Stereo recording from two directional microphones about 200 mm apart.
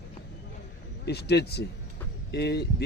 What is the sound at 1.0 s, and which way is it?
Speech, 55° left (ahead or behind).